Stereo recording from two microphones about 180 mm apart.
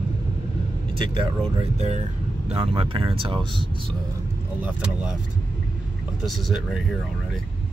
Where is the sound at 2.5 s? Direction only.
30° right (ahead or behind).